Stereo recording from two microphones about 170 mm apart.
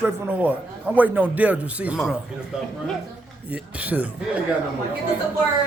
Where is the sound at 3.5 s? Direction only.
10° right (ahead or behind).